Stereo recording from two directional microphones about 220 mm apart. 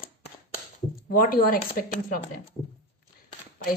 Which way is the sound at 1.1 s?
40° left (ahead or behind).